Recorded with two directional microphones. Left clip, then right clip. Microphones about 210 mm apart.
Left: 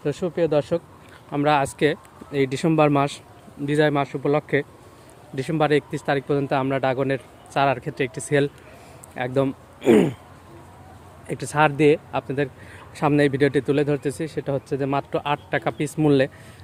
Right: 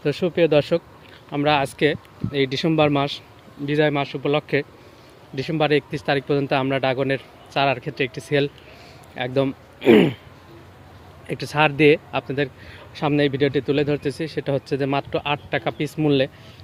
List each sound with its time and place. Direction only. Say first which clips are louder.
0.0 s speech: right 4 dB; 20° right (ahead or behind)
1.3 s speech: even; centre (ahead or behind)
4.1 s speech: even; 10° right (ahead or behind)
9.8 s speech: right 2 dB; 20° right (ahead or behind)
11.3 s speech: even; centre (ahead or behind)
13.0 s speech: left 1 dB; 5° left (ahead or behind)
14.4 s speech: right 3 dB; 10° right (ahead or behind); by 16.3 s 5° left (ahead or behind)